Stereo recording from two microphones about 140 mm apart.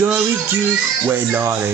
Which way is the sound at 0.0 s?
15° right (ahead or behind).